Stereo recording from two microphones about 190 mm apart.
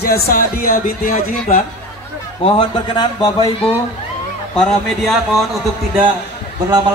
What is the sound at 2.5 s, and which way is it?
A man's voice, 25° left (ahead or behind).